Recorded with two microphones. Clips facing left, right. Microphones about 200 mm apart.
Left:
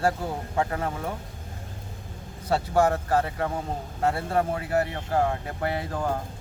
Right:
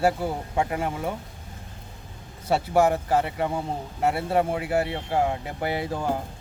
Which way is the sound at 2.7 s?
10° right (ahead or behind).